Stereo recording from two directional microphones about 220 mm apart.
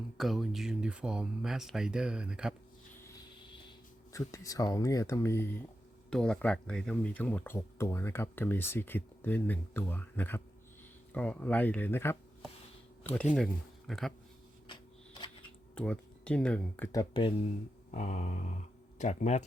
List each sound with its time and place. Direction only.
0.2 s speech: centre (ahead or behind)
4.1 s speech: 15° left (ahead or behind)
15.7 s speech: 5° left (ahead or behind); by 17.5 s 20° left (ahead or behind)
17.9 s a sound: 35° left (ahead or behind)